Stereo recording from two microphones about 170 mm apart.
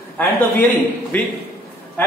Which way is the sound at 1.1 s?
10° left (ahead or behind).